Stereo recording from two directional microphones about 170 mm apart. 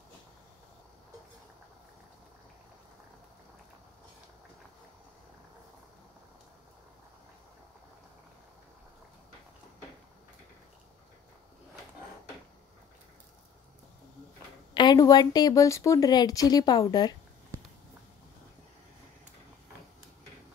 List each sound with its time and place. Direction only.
14.7 s a woman's voice: 25° left (ahead or behind)